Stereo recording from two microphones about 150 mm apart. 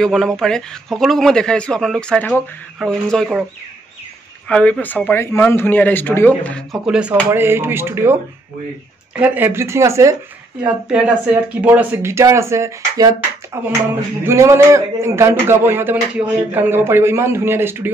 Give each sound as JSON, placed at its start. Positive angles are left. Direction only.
{"t": 0.0, "sound": "a man's voice", "side_deg": 5}
{"t": 4.5, "sound": "a man's voice", "side_deg": 5}
{"t": 6.9, "sound": "a man's voice", "side_deg": -5}
{"t": 10.6, "sound": "a man's voice", "side_deg": -10}